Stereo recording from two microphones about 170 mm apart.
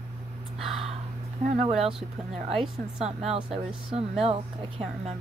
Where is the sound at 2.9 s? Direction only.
40° right (ahead or behind).